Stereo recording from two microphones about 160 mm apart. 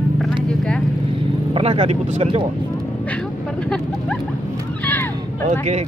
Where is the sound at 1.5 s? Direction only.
35° right (ahead or behind).